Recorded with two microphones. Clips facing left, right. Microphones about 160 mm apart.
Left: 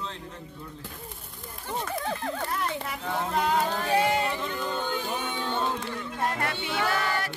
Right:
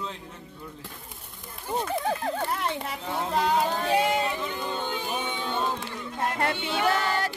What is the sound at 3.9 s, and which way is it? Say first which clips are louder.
Music: left 1 dB; 15° right (ahead or behind).